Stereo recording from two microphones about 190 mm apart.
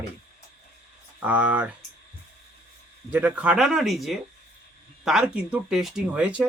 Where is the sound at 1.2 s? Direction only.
10° right (ahead or behind).